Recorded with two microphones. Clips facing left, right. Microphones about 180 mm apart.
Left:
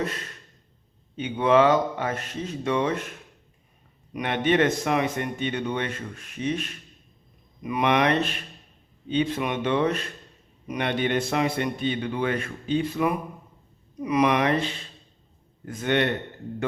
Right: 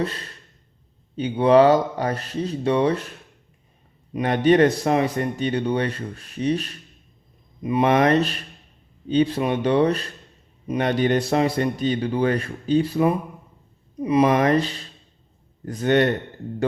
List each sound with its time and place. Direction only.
0.0 s speech: 30° right (ahead or behind)
14.3 s speech: 45° right (ahead or behind)